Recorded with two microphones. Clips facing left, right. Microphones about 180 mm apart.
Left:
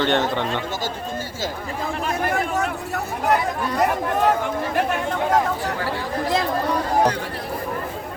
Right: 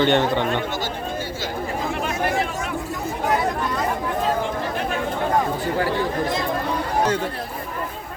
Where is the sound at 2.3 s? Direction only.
65° left (ahead or behind).